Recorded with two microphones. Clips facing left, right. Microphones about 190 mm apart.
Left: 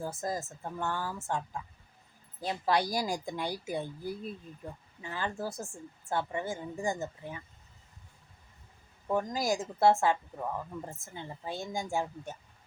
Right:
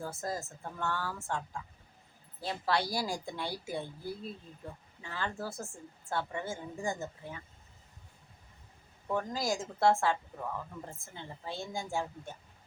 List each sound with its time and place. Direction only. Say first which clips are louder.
0.0 s speech: left 2 dB; 15° left (ahead or behind)
2.4 s speech: left 3 dB; 15° left (ahead or behind)
9.0 s speech: left 3 dB; 15° left (ahead or behind)